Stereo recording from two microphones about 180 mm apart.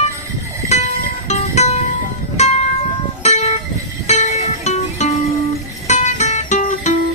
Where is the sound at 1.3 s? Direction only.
40° left (ahead or behind).